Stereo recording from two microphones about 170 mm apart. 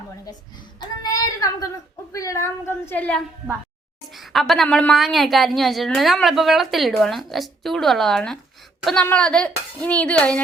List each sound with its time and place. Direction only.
0.8 s child singing: 25° left (ahead or behind)
2.1 s a woman's voice: 20° left (ahead or behind)